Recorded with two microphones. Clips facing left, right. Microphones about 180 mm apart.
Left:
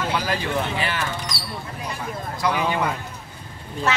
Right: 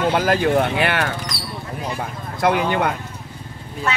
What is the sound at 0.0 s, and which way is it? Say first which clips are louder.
Speech: right 7 dB; 50° right (ahead or behind).